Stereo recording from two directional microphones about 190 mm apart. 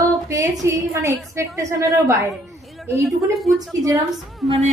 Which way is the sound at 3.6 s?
20° right (ahead or behind).